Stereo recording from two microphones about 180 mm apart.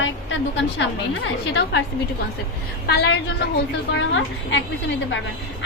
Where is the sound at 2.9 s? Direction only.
65° left (ahead or behind).